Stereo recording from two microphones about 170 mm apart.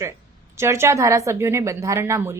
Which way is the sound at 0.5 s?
15° right (ahead or behind).